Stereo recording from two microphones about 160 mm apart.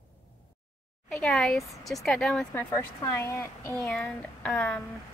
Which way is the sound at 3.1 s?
15° left (ahead or behind).